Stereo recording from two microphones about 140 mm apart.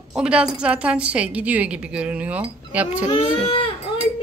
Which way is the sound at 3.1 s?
40° left (ahead or behind).